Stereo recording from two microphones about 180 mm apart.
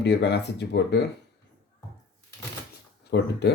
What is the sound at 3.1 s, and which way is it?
Speech, 70° left (ahead or behind).